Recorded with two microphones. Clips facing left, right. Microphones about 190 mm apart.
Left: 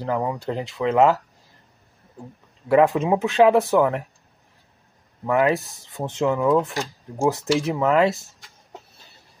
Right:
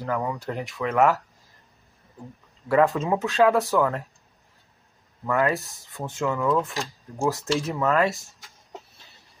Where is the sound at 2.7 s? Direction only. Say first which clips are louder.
Left 3 dB; 15° left (ahead or behind).